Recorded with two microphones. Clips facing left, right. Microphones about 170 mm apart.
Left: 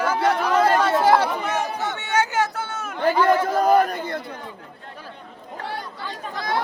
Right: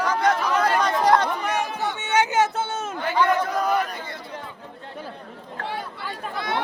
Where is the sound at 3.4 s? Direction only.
45° left (ahead or behind).